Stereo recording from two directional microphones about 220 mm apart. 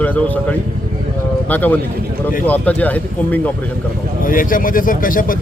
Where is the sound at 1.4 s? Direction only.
5° left (ahead or behind).